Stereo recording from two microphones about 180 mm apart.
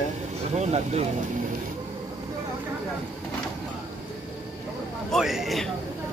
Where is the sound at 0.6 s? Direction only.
35° right (ahead or behind).